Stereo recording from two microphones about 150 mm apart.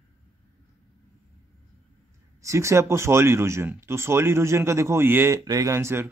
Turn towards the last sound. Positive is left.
turn(degrees=-15)  # may be behind; listen again after turning